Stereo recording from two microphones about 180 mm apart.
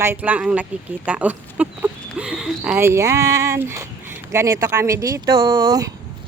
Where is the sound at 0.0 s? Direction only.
10° right (ahead or behind).